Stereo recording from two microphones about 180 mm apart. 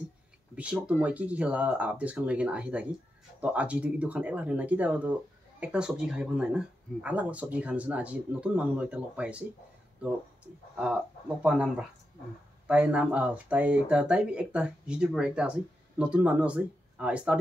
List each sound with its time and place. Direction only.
0.6 s speech: 5° right (ahead or behind)
11.4 s speech: 5° right (ahead or behind)